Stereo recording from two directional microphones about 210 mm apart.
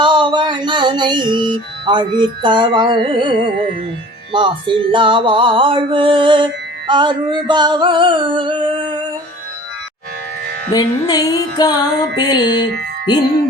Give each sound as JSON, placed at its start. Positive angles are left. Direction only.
{"t": 0.0, "sound": "music", "side_deg": -20}
{"t": 10.7, "sound": "music", "side_deg": 15}